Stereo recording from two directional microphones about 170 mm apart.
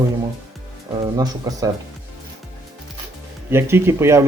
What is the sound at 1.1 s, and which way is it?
Speech, 20° right (ahead or behind).